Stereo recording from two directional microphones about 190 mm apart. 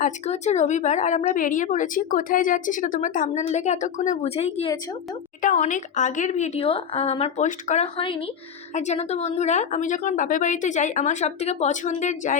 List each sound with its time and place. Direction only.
0.0 s a woman's voice: 35° left (ahead or behind)